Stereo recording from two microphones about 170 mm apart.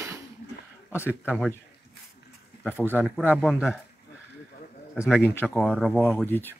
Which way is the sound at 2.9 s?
10° right (ahead or behind).